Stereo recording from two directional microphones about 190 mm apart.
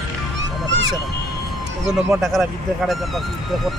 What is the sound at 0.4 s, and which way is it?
Music, 75° right (ahead or behind).